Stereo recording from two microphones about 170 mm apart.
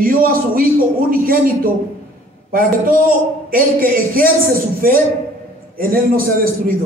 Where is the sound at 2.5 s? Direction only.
55° right (ahead or behind).